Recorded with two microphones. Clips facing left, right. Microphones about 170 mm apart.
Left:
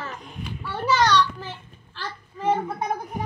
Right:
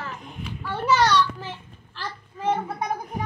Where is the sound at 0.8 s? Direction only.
5° right (ahead or behind).